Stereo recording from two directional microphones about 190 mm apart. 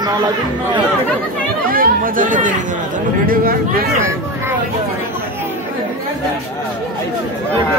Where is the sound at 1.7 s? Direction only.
50° right (ahead or behind).